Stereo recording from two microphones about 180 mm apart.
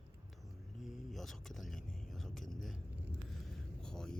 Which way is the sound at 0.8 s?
Centre (ahead or behind).